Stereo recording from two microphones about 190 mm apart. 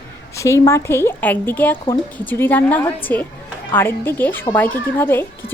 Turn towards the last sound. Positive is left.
turn(degrees=10)  # may be behind; listen again after turning